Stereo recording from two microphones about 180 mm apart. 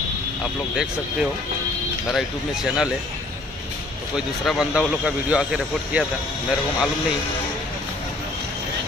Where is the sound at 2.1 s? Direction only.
Centre (ahead or behind).